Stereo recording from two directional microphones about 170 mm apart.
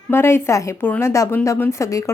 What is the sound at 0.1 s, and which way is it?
Speech, 15° left (ahead or behind).